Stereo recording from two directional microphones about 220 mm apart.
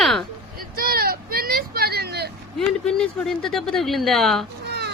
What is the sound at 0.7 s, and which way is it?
Vehicle, 45° right (ahead or behind).